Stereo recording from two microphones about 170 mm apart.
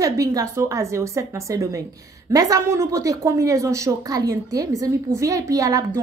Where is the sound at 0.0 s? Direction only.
20° right (ahead or behind).